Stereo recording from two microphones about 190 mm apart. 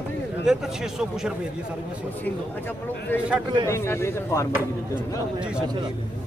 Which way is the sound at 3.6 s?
15° left (ahead or behind).